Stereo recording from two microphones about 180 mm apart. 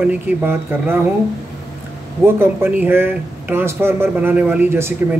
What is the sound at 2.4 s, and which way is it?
Speech, 10° right (ahead or behind).